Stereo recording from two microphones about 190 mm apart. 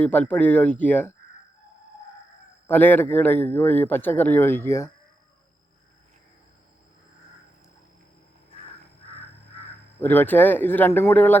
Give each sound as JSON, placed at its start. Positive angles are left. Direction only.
{"t": 0.0, "sound": "speech", "side_deg": 10}
{"t": 2.6, "sound": "speech", "side_deg": 10}
{"t": 10.0, "sound": "speech", "side_deg": 10}